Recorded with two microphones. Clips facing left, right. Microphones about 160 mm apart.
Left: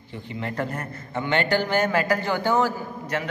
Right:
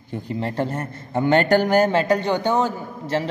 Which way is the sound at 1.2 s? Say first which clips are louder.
Right 6 dB; 45° right (ahead or behind).